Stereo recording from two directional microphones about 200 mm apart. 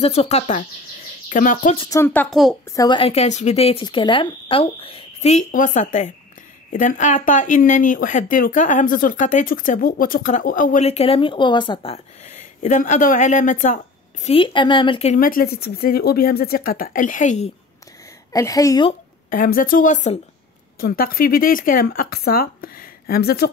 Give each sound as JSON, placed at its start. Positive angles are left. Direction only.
{"t": 0.0, "sound": "speech", "side_deg": 30}
{"t": 1.8, "sound": "a woman's voice", "side_deg": 15}
{"t": 14.2, "sound": "speech", "side_deg": 25}
{"t": 15.1, "sound": "speech", "side_deg": 45}
{"t": 18.3, "sound": "a woman's voice", "side_deg": 15}
{"t": 19.3, "sound": "speech", "side_deg": 45}